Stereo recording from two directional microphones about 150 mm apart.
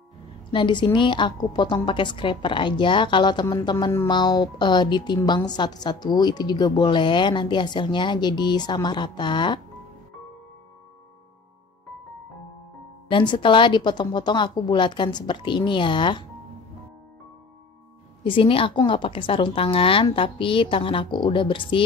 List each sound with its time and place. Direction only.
0.5 s a woman's voice: 30° left (ahead or behind)
13.1 s a woman's voice: 30° left (ahead or behind)
18.2 s a woman's voice: 35° left (ahead or behind)